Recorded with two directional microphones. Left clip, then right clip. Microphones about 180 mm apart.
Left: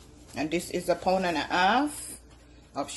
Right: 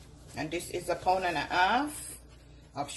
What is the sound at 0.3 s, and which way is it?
Speech, 65° left (ahead or behind).